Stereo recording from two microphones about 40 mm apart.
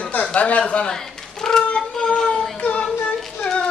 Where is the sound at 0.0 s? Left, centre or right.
Left.